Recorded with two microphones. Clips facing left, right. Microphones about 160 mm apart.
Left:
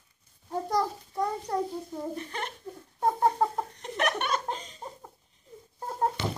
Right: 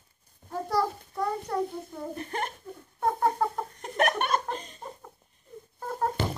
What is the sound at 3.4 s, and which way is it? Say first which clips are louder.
Speech: left 1 dB; 20° left (ahead or behind).